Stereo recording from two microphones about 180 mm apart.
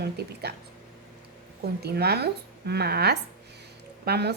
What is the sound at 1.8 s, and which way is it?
Speech, 65° right (ahead or behind).